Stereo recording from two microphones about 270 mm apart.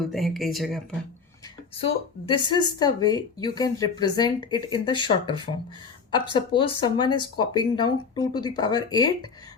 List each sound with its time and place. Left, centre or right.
0.0 s speech: centre
2.2 s speech: centre